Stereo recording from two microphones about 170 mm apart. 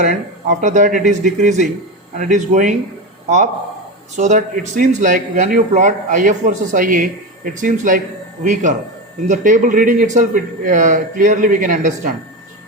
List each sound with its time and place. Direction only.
0.0 s speech: 45° right (ahead or behind)
9.2 s speech: 50° right (ahead or behind)